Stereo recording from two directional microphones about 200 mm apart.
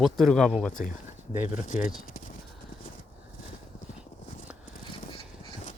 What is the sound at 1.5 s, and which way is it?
Speech, 40° left (ahead or behind).